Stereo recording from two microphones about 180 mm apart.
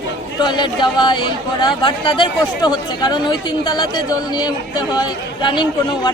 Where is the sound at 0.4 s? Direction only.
25° left (ahead or behind).